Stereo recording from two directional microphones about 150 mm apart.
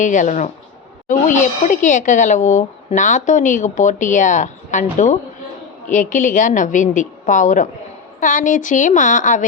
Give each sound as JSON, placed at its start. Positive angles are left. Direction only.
{"t": 0.0, "sound": "speech", "side_deg": 55}